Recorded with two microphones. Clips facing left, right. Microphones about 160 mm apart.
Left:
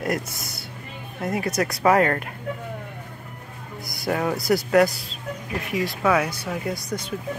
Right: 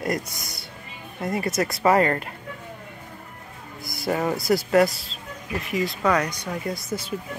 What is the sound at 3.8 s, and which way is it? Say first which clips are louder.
Speech: even; centre (ahead or behind).